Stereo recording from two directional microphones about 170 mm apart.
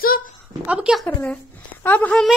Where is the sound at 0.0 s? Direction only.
60° left (ahead or behind).